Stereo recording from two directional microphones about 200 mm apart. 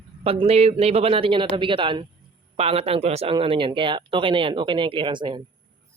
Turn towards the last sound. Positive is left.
turn(degrees=-25)  # may be behind; listen again after turning